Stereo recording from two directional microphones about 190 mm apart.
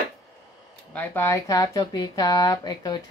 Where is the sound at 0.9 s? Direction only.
10° left (ahead or behind).